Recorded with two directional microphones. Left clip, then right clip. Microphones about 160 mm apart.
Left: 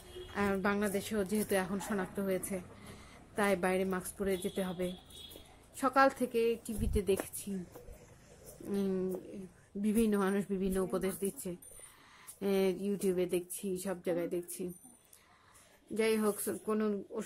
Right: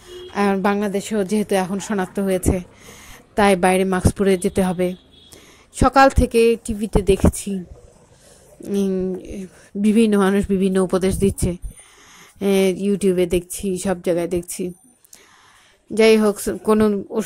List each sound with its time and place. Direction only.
0.3 s a woman's voice: 40° right (ahead or behind)
8.7 s speech: 30° right (ahead or behind)
16.0 s a woman's voice: 45° right (ahead or behind)